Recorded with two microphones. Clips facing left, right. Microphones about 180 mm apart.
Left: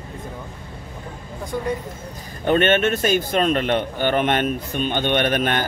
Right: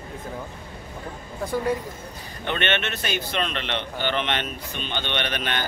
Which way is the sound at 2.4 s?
45° left (ahead or behind).